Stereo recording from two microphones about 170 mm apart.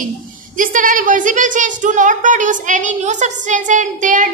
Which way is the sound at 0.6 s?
50° right (ahead or behind).